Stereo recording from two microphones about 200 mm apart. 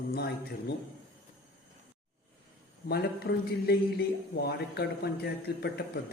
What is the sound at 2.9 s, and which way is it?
A man's voice, 55° left (ahead or behind).